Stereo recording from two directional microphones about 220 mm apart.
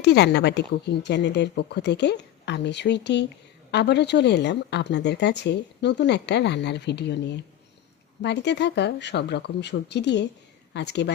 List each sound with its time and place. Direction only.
0.0 s a woman's voice: 50° left (ahead or behind)